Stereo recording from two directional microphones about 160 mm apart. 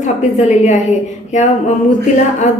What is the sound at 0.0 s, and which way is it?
A woman's voice, 45° left (ahead or behind).